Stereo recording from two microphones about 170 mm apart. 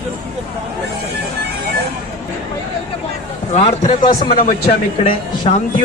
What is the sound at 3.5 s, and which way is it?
Speech, 40° left (ahead or behind).